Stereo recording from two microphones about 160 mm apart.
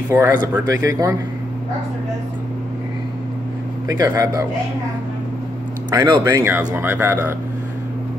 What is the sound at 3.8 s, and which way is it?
Speech, 20° right (ahead or behind).